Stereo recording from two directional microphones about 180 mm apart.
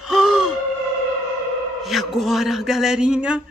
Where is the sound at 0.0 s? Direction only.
Centre (ahead or behind).